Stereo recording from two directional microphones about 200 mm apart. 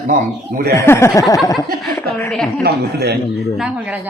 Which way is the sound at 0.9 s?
10° left (ahead or behind).